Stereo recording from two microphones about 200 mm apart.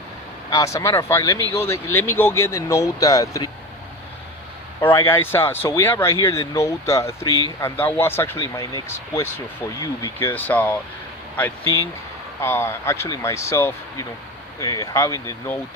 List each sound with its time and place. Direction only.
0.5 s speech: 15° left (ahead or behind)
5.0 s speech: 10° left (ahead or behind)